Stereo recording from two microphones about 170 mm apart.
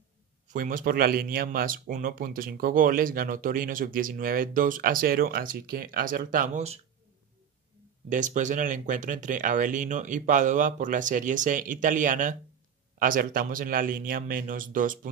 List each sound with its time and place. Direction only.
0.5 s speech: 55° right (ahead or behind)
8.1 s speech: 45° right (ahead or behind)